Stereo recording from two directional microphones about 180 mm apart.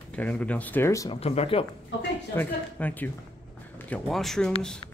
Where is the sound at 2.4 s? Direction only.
10° left (ahead or behind).